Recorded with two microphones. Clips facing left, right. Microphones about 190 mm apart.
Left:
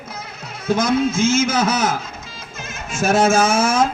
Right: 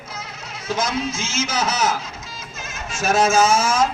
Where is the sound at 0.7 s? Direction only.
55° left (ahead or behind).